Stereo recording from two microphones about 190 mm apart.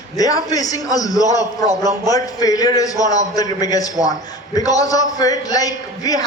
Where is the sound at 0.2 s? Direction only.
20° left (ahead or behind).